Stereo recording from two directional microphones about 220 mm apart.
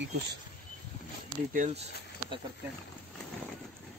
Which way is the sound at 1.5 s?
35° right (ahead or behind).